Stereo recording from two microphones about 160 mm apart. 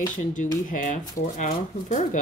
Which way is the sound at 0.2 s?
55° left (ahead or behind).